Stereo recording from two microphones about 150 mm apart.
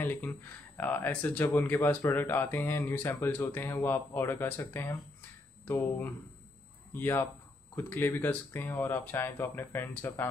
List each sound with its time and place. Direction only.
0.0 s speech: 10° left (ahead or behind)